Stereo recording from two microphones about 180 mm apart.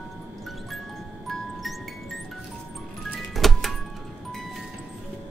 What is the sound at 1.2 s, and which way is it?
Music, centre (ahead or behind).